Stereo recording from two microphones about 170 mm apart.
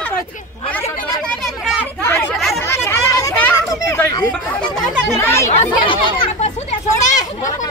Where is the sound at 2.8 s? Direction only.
15° left (ahead or behind).